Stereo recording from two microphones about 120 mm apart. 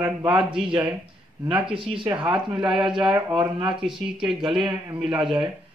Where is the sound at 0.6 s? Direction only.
40° right (ahead or behind).